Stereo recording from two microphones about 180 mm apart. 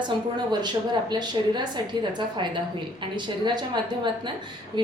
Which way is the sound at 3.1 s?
25° right (ahead or behind).